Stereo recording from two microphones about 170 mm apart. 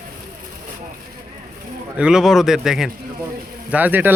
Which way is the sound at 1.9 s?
5° right (ahead or behind).